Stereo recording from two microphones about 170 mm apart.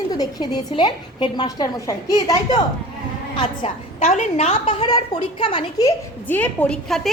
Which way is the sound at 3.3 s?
35° left (ahead or behind).